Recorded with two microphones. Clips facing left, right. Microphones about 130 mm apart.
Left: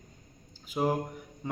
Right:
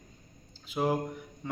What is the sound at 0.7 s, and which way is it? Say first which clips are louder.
Speech: even; 10° left (ahead or behind).